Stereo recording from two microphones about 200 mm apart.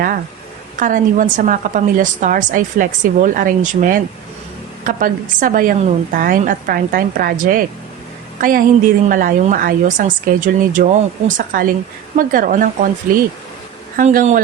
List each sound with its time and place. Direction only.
0.8 s a woman's voice: 40° right (ahead or behind)
13.9 s a woman's voice: 45° right (ahead or behind)